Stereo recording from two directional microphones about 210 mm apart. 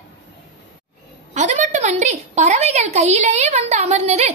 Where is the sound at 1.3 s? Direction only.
35° right (ahead or behind).